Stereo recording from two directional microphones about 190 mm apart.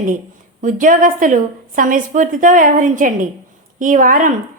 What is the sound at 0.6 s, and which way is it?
A woman's voice, 45° right (ahead or behind).